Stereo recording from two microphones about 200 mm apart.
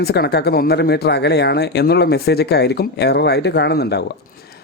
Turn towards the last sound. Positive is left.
turn(degrees=55)  # may be behind; listen again after turning